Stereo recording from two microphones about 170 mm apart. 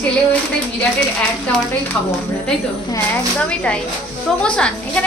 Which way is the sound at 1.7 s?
10° left (ahead or behind).